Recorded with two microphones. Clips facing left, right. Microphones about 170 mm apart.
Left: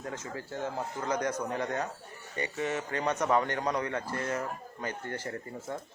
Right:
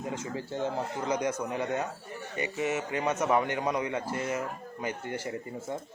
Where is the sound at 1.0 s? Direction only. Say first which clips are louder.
Even; 10° right (ahead or behind).